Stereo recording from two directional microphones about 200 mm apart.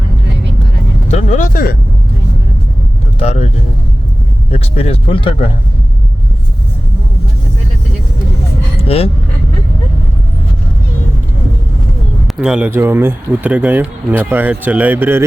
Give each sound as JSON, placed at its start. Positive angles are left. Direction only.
{"t": 1.0, "sound": "speech", "side_deg": 35}
{"t": 3.2, "sound": "speech", "side_deg": 30}
{"t": 4.5, "sound": "speech", "side_deg": 30}
{"t": 8.8, "sound": "a sound", "side_deg": 30}
{"t": 12.4, "sound": "speech", "side_deg": -5}